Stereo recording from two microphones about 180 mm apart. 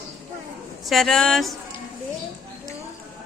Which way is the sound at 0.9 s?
Centre (ahead or behind).